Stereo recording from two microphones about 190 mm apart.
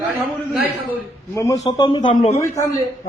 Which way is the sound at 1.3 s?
15° left (ahead or behind).